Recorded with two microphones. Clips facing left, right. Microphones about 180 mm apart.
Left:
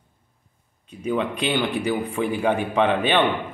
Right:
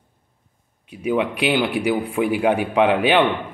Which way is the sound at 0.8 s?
10° right (ahead or behind).